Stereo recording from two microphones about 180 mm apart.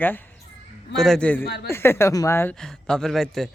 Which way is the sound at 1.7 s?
15° left (ahead or behind).